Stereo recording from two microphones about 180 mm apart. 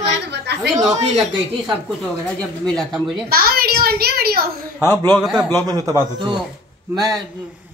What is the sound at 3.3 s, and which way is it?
A woman's voice, 55° right (ahead or behind).